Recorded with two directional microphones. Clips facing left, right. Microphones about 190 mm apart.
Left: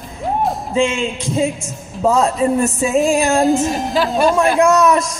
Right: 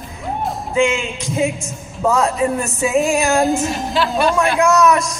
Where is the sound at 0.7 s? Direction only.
30° left (ahead or behind).